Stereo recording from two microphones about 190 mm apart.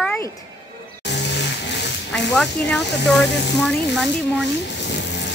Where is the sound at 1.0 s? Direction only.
65° left (ahead or behind).